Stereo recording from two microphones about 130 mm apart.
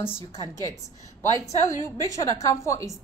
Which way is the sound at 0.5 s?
25° left (ahead or behind).